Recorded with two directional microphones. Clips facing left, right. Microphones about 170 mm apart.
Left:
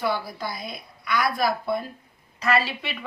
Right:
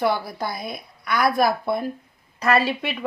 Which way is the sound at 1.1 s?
50° right (ahead or behind).